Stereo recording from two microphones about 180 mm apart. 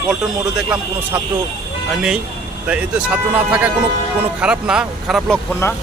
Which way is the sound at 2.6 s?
5° right (ahead or behind).